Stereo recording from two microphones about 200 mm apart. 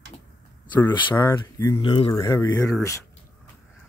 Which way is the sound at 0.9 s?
20° left (ahead or behind).